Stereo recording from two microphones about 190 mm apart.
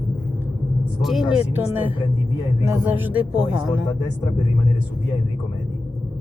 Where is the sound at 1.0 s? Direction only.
Centre (ahead or behind).